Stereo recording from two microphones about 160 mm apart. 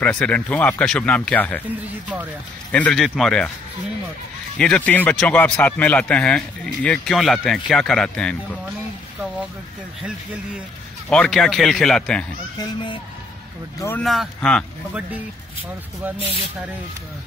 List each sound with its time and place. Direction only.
0.0 s speech: 10° left (ahead or behind)
1.8 s speech: 10° right (ahead or behind)
2.7 s speech: 5° left (ahead or behind)
4.6 s speech: 10° left (ahead or behind)
11.1 s speech: 5° left (ahead or behind)
12.5 s speech: 30° left (ahead or behind)
13.7 s speech: 15° left (ahead or behind)
14.0 s speech: centre (ahead or behind)